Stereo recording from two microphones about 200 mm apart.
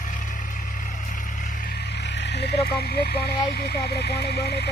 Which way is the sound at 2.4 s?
50° left (ahead or behind).